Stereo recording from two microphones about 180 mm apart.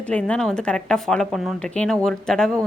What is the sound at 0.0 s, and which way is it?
A woman's voice, 5° left (ahead or behind).